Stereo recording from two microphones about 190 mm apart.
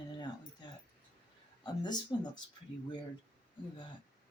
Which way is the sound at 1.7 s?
20° left (ahead or behind).